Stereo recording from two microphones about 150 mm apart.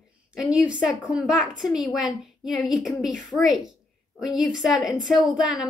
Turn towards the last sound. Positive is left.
turn(degrees=-5)  # may be behind; listen again after turning